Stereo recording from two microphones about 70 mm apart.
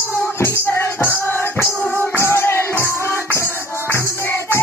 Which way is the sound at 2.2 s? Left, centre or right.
Left.